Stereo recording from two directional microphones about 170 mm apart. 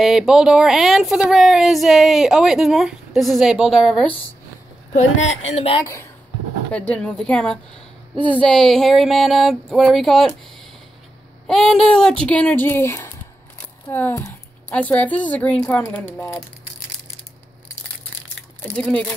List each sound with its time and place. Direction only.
0.0 s speech: centre (ahead or behind)
5.5 s speech: 35° left (ahead or behind)
6.9 s speech: 5° left (ahead or behind)
11.4 s a woman's voice: centre (ahead or behind)
18.8 s speech: 5° left (ahead or behind)